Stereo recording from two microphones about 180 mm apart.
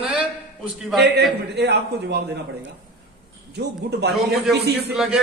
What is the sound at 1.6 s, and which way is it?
Speech, 65° right (ahead or behind).